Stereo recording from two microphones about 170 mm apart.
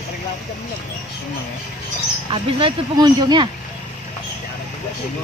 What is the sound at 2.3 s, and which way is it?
Speech, 25° right (ahead or behind).